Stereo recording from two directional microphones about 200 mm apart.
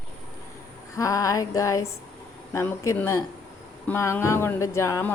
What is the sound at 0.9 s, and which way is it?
Speech, 15° left (ahead or behind).